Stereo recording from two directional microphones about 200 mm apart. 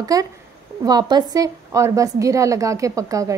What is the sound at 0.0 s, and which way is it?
A woman's voice, 20° right (ahead or behind).